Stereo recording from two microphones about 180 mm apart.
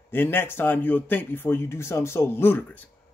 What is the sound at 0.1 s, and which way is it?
Speech, 10° left (ahead or behind).